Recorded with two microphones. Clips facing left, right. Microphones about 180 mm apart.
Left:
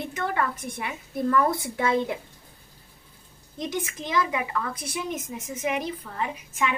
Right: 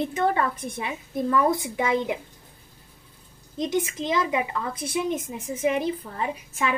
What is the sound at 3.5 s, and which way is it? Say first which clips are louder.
A woman's voice: right 5 dB; 20° right (ahead or behind).